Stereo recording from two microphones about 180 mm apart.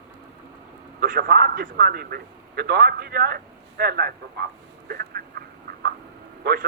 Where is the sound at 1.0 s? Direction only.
60° right (ahead or behind).